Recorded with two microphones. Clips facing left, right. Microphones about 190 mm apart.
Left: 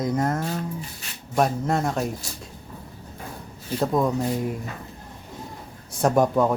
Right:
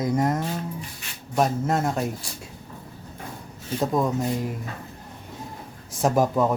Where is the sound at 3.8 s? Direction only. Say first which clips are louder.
Left 1 dB; centre (ahead or behind).